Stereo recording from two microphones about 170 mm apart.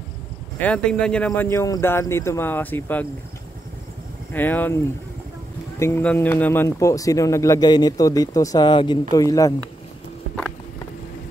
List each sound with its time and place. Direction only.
0.6 s speech: 5° left (ahead or behind)
4.3 s speech: 10° left (ahead or behind)
5.8 s speech: 15° left (ahead or behind)